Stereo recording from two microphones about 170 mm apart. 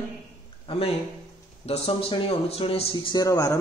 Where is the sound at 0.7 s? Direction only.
35° left (ahead or behind).